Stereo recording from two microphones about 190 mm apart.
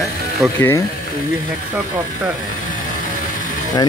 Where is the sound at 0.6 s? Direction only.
10° left (ahead or behind).